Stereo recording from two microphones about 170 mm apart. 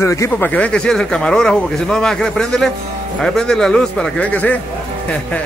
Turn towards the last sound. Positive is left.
turn(degrees=10)  # may be behind; listen again after turning